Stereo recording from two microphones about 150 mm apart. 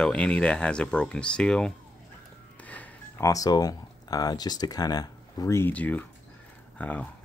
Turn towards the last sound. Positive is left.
turn(degrees=10)  # may be behind; listen again after turning